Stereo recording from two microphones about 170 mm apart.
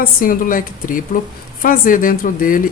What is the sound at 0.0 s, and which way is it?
Speech, 55° left (ahead or behind).